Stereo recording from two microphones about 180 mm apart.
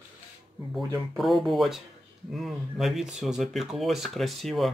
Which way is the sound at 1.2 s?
Centre (ahead or behind).